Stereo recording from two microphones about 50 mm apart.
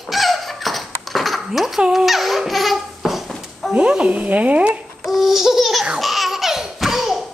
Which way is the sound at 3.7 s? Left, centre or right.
Right.